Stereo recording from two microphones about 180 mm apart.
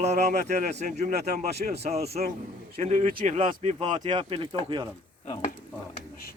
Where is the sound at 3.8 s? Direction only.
25° right (ahead or behind).